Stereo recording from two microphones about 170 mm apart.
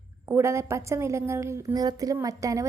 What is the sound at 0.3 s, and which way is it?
A woman's voice, 15° right (ahead or behind).